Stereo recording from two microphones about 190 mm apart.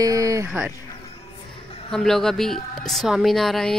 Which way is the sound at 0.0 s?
15° right (ahead or behind).